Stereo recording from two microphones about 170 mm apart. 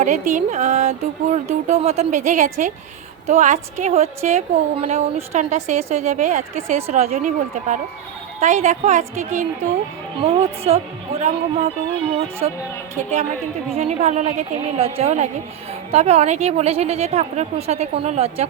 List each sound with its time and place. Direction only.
0.0 s a woman's voice: 45° right (ahead or behind)
10.2 s a woman's voice: 35° right (ahead or behind)